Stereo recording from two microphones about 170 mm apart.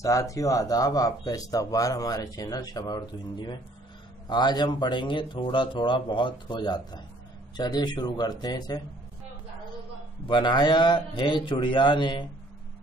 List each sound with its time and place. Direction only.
0.0 s speech: 20° left (ahead or behind)
10.2 s speech: 25° left (ahead or behind)